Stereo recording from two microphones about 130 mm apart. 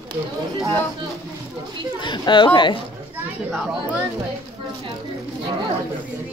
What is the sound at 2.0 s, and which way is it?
Speech, 35° left (ahead or behind).